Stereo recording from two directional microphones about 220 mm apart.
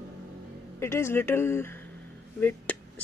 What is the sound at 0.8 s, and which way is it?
Speech, 10° left (ahead or behind).